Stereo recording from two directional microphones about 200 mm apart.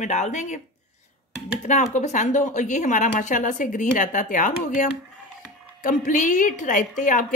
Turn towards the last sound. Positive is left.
turn(degrees=40)  # may be behind; listen again after turning